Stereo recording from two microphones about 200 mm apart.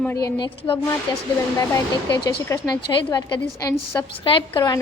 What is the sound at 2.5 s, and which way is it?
A woman's voice, 20° left (ahead or behind).